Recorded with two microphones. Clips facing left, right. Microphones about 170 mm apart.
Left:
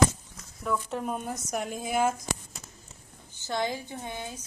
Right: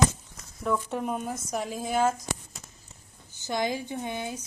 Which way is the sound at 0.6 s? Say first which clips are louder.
Right 2 dB; 5° right (ahead or behind).